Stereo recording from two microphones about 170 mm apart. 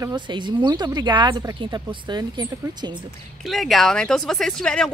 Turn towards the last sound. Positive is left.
turn(degrees=5)  # may be behind; listen again after turning